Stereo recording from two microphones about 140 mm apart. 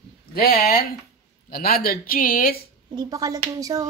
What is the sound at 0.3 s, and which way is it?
Speech, 90° left.